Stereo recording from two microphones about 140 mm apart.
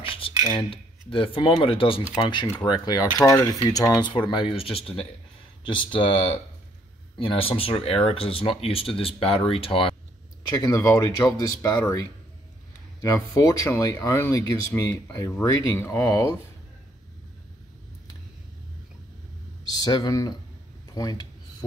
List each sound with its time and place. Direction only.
0.5 s speech: 35° left (ahead or behind)
2.4 s speech: 20° left (ahead or behind)
2.7 s speech: 30° left (ahead or behind)
10.5 s speech: 20° left (ahead or behind)
19.7 s speech: 30° left (ahead or behind)
20.9 s a sound: 30° left (ahead or behind)